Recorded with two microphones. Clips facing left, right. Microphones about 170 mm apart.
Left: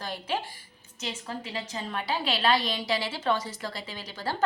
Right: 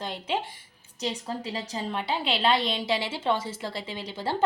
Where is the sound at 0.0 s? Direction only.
25° right (ahead or behind).